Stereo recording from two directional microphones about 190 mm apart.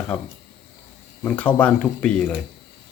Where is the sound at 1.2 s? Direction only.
5° left (ahead or behind).